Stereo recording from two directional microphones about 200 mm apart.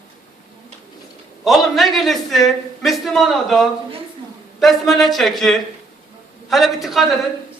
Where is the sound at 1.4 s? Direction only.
Centre (ahead or behind).